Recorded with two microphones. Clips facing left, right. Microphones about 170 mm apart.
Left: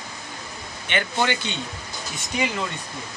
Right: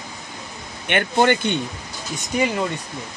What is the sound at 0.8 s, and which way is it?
Speech, 55° right (ahead or behind).